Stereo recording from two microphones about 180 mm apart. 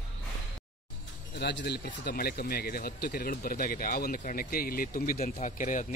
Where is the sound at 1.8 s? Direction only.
55° left (ahead or behind).